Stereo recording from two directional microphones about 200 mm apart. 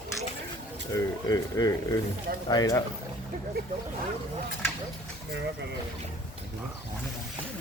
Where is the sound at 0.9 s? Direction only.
20° left (ahead or behind).